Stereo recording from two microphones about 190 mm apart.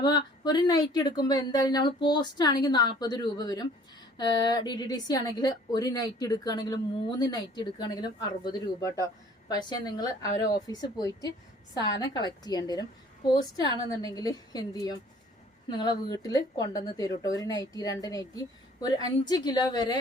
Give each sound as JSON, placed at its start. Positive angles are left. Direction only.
{"t": 0.0, "sound": "speech", "side_deg": 20}